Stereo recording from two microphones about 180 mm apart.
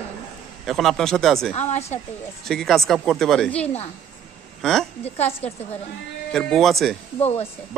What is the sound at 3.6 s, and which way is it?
Speech, 35° left (ahead or behind).